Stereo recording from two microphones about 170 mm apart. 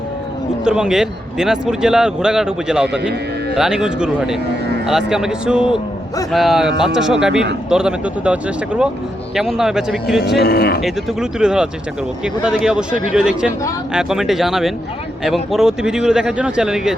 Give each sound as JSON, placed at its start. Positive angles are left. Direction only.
{"t": 0.6, "sound": "a man's voice", "side_deg": -5}
{"t": 10.2, "sound": "speech", "side_deg": 70}
{"t": 10.8, "sound": "a man's voice", "side_deg": 0}